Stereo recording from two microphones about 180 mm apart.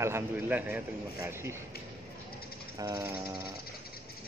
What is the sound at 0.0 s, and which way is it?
A man's voice, 10° right (ahead or behind).